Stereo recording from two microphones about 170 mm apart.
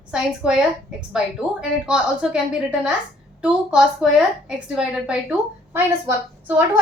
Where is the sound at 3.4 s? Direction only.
5° right (ahead or behind).